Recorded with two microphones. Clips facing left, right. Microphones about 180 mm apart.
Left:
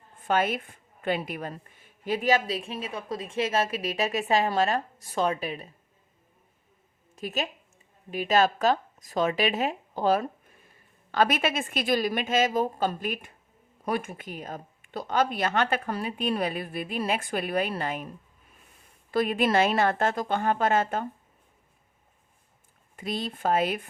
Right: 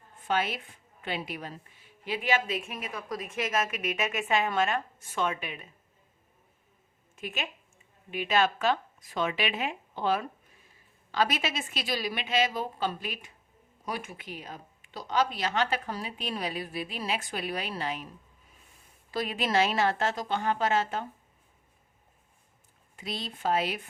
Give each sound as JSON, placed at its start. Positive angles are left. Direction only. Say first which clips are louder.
{"t": 0.2, "sound": "a woman's voice", "louder": "left 4 dB", "side_deg": 50}
{"t": 7.2, "sound": "a woman's voice", "louder": "left 5 dB", "side_deg": 40}
{"t": 11.1, "sound": "speech", "louder": "left 4 dB", "side_deg": 50}
{"t": 19.1, "sound": "speech", "louder": "left 5 dB", "side_deg": 55}
{"t": 23.0, "sound": "speech", "louder": "left 6 dB", "side_deg": 50}